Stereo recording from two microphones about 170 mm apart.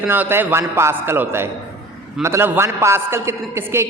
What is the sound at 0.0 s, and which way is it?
A man's voice, 10° right (ahead or behind).